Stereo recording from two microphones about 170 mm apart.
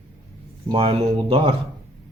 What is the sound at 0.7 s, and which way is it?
Speech, 35° right (ahead or behind).